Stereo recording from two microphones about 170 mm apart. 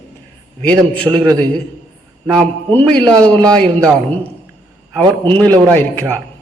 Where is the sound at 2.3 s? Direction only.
5° left (ahead or behind).